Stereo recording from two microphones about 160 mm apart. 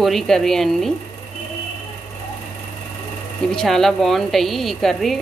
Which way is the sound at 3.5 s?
5° left (ahead or behind).